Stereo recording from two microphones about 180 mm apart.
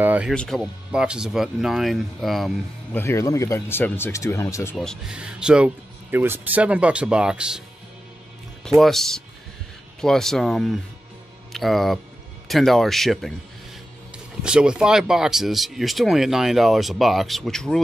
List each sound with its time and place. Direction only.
0.0 s music: 10° right (ahead or behind)
0.3 s speech: 5° left (ahead or behind)
3.0 s speech: 15° left (ahead or behind)
4.7 s speech: centre (ahead or behind)
8.6 s speech: centre (ahead or behind)